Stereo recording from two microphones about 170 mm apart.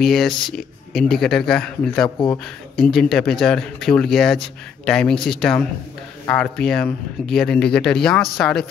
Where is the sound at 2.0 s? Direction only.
25° left (ahead or behind).